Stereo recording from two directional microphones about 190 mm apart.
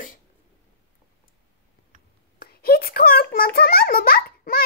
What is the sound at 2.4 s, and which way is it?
A child's voice, 55° left (ahead or behind).